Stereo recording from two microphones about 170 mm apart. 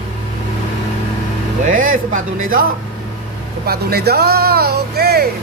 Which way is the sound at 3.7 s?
65° right (ahead or behind).